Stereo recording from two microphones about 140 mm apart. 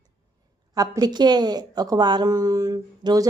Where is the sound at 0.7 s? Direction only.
25° right (ahead or behind).